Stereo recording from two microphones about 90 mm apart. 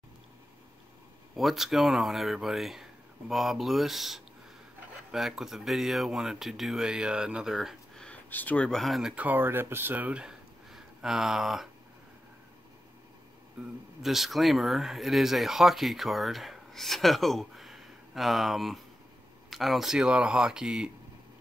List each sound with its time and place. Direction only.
1.3 s speech: centre (ahead or behind)
8.0 s a sound: 15° left (ahead or behind)
8.6 s speech: 5° left (ahead or behind)
9.1 s speech: 20° right (ahead or behind)
13.6 s speech: 5° right (ahead or behind)